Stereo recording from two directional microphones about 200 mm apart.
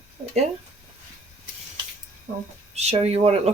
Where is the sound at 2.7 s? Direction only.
30° right (ahead or behind).